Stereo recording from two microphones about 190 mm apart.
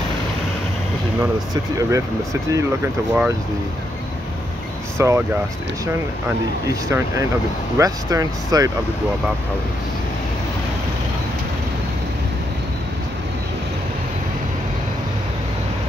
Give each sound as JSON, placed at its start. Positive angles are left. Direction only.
{"t": 1.2, "sound": "speech", "side_deg": -15}
{"t": 4.9, "sound": "speech", "side_deg": -15}